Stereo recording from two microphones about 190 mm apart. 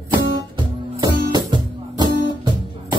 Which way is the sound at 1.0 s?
20° right (ahead or behind).